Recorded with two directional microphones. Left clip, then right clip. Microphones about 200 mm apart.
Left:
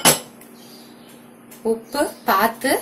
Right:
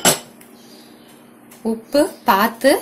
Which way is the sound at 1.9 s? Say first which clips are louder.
Right 7 dB; 50° right (ahead or behind).